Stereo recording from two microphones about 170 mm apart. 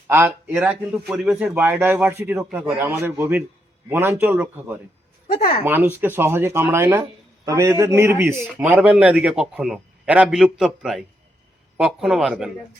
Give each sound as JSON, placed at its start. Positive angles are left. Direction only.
{"t": 0.1, "sound": "a man's voice", "side_deg": -15}
{"t": 5.3, "sound": "speech", "side_deg": 60}
{"t": 5.6, "sound": "a man's voice", "side_deg": -15}